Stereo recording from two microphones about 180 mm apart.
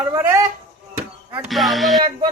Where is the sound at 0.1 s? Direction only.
15° right (ahead or behind).